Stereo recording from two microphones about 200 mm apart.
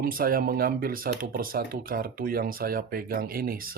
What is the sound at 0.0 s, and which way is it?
Speech, 45° right (ahead or behind).